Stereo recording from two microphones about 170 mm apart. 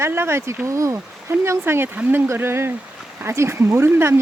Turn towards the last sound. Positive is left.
turn(degrees=-15)  # may be behind; listen again after turning